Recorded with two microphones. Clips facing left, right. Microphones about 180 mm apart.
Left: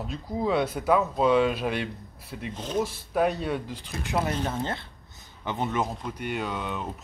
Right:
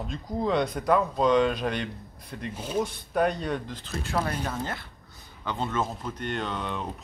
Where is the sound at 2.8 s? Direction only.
5° left (ahead or behind).